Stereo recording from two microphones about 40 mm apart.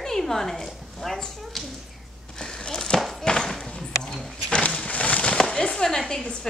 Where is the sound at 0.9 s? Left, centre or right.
Centre.